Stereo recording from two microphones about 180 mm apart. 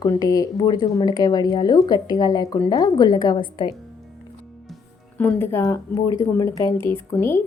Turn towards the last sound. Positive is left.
turn(degrees=15)  # may be behind; listen again after turning